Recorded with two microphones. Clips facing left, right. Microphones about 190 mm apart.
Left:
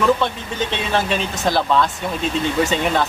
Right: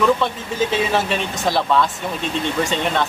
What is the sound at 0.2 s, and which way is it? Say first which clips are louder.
Speech: right 1 dB; 5° right (ahead or behind).